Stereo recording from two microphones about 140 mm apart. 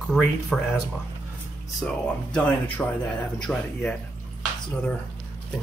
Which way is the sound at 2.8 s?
10° left (ahead or behind).